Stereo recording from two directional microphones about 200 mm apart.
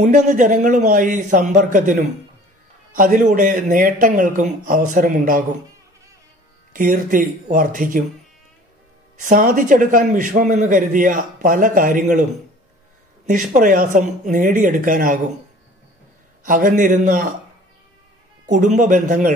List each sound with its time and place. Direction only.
0.0 s a man's voice: 40° right (ahead or behind)
6.7 s speech: 45° right (ahead or behind)
9.1 s a man's voice: 40° right (ahead or behind)
13.3 s a man's voice: 40° right (ahead or behind)
16.4 s a man's voice: 40° right (ahead or behind)
18.4 s a man's voice: 40° right (ahead or behind)